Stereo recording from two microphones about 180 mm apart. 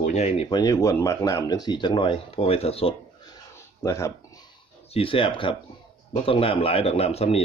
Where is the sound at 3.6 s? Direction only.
15° left (ahead or behind).